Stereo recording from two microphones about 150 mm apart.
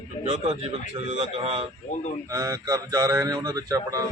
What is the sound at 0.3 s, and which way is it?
A man's voice, 50° right (ahead or behind).